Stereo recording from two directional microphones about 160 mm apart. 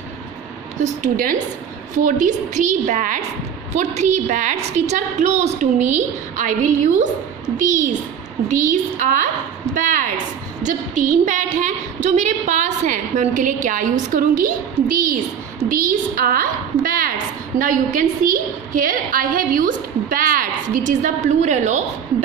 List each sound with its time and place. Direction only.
0.7 s a woman's voice: 50° right (ahead or behind)
8.5 s a woman's voice: 55° right (ahead or behind)
10.6 s a woman's voice: 55° right (ahead or behind)